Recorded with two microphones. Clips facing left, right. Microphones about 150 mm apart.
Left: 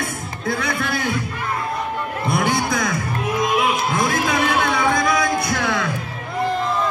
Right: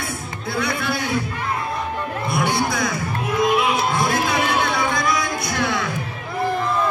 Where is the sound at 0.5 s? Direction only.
50° left (ahead or behind).